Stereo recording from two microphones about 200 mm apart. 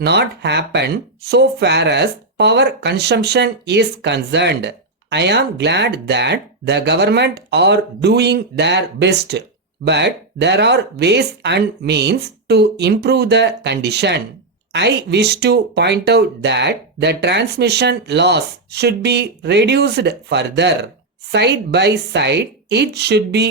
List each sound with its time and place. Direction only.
0.0 s speech: 55° right (ahead or behind)